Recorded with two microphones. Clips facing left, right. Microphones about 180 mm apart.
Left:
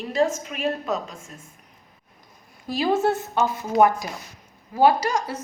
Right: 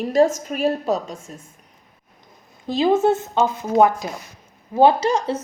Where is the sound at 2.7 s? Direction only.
20° right (ahead or behind).